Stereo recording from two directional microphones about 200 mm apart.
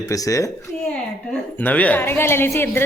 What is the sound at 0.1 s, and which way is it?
Speech, 15° left (ahead or behind).